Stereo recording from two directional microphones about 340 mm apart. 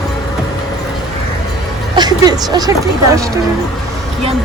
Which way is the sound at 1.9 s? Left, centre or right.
Centre.